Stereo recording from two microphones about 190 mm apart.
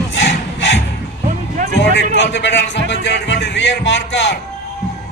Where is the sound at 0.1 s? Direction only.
65° left (ahead or behind).